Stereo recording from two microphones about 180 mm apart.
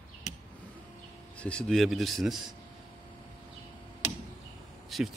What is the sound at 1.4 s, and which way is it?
A man's voice, 5° left (ahead or behind).